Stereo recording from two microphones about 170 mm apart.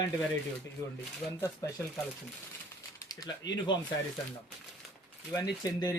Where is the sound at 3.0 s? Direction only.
20° left (ahead or behind).